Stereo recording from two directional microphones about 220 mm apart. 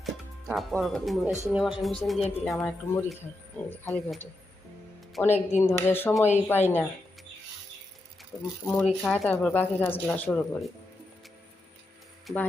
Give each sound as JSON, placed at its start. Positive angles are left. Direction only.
{"t": 0.0, "sound": "a woman's voice", "side_deg": 0}
{"t": 5.3, "sound": "speech", "side_deg": 30}
{"t": 5.6, "sound": "a woman's voice", "side_deg": 10}
{"t": 8.6, "sound": "a woman's voice", "side_deg": 0}
{"t": 12.2, "sound": "speech", "side_deg": 10}